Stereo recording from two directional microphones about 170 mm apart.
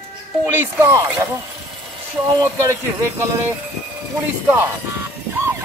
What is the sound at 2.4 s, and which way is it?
Speech, 15° right (ahead or behind).